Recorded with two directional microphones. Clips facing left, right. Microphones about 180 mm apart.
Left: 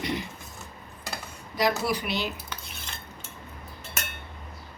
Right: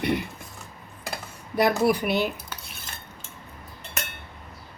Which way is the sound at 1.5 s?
55° right (ahead or behind).